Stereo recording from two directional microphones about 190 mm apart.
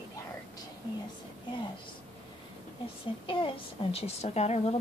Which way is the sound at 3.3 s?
25° left (ahead or behind).